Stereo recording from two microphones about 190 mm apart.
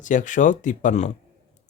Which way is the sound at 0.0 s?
40° left (ahead or behind).